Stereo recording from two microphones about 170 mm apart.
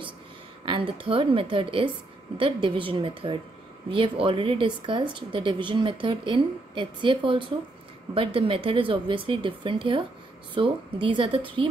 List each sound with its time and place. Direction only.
0.7 s a woman's voice: 30° right (ahead or behind)